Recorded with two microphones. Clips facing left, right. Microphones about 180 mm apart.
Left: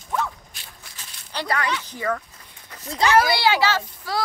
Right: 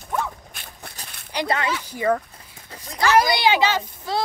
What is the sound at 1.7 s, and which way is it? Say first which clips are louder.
Speech: right 1 dB; 10° right (ahead or behind).